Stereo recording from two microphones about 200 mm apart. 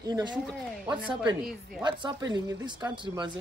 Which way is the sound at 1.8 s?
20° right (ahead or behind).